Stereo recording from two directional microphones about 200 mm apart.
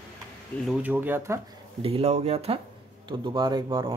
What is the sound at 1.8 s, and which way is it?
Speech, 30° right (ahead or behind).